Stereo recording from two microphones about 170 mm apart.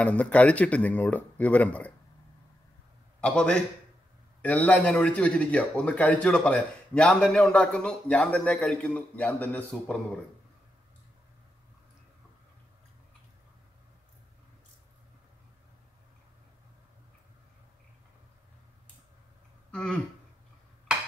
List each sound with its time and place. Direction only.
0.0 s a man's voice: 10° left (ahead or behind)
3.2 s a man's voice: 5° left (ahead or behind)
19.7 s a sound: 5° left (ahead or behind)